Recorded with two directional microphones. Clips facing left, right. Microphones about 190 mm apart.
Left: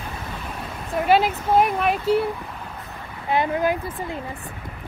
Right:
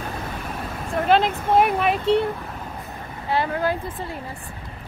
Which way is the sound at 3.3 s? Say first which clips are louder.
Left 2 dB; 20° left (ahead or behind).